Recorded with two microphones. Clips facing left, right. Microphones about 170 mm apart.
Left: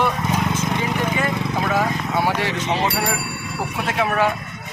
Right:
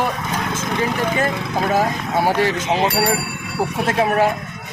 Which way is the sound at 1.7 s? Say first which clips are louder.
Right 3 dB; 40° right (ahead or behind).